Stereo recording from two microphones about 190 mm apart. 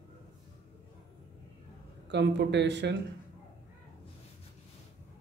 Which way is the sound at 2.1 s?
65° right (ahead or behind).